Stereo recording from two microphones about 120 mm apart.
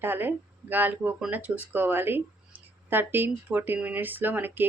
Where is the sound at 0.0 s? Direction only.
15° right (ahead or behind).